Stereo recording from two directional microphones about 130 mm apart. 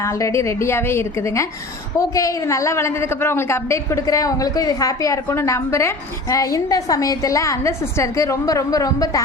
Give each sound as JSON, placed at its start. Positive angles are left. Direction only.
{"t": 0.0, "sound": "a woman's voice", "side_deg": 25}